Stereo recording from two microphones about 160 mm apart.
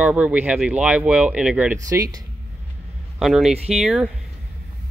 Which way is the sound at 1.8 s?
20° right (ahead or behind).